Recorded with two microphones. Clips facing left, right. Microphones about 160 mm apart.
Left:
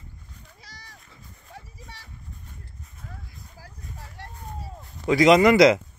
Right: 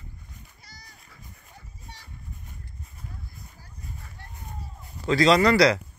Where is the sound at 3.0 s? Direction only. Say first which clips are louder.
Left 1 dB; 90° left.